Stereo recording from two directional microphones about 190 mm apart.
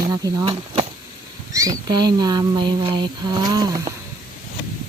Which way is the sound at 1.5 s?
20° right (ahead or behind).